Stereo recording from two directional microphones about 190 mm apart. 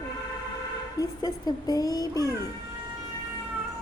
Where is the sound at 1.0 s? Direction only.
20° left (ahead or behind).